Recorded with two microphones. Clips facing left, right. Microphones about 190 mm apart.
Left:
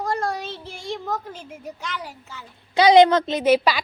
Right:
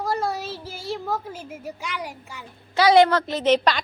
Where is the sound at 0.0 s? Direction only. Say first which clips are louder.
Even; 5° right (ahead or behind).